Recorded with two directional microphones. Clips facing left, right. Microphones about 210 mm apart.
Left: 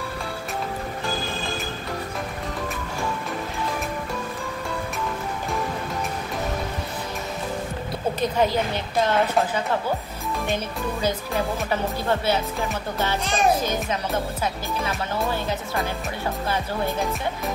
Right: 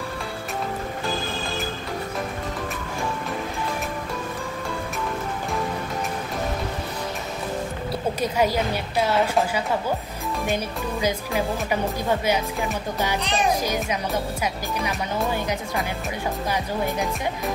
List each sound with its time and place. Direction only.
8.2 s speech: 10° right (ahead or behind)
13.2 s a child's voice: 45° left (ahead or behind)
13.6 s speech: 10° right (ahead or behind)